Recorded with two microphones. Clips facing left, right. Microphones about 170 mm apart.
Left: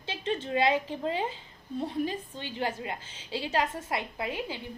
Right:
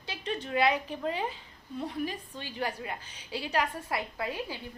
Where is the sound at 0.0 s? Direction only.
25° left (ahead or behind).